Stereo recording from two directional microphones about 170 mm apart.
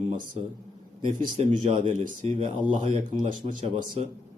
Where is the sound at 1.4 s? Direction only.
35° right (ahead or behind).